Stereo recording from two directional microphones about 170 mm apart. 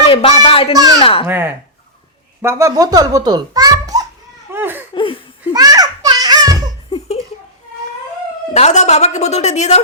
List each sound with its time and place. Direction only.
0.0 s speech: 30° left (ahead or behind)
0.7 s a child's voice: 20° right (ahead or behind)
1.0 s a woman's voice: 35° left (ahead or behind)
1.3 s a child's voice: 10° right (ahead or behind)
4.5 s laughter: 10° right (ahead or behind)
4.9 s laughter: 30° left (ahead or behind)
5.5 s children playing: 20° right (ahead or behind)
8.5 s a woman's voice: 40° left (ahead or behind)